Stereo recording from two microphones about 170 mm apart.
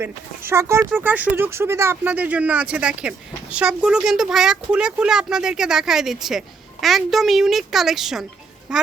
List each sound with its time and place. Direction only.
0.0 s speech: 15° right (ahead or behind)